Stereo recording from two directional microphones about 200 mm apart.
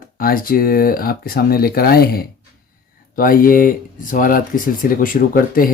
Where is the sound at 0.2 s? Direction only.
45° left (ahead or behind).